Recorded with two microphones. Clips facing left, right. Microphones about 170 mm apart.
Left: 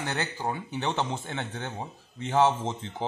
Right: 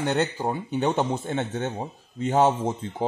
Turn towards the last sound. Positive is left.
turn(degrees=-10)  # may be behind; listen again after turning